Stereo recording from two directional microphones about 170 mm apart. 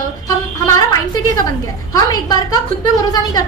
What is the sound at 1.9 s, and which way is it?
Speech, 25° left (ahead or behind).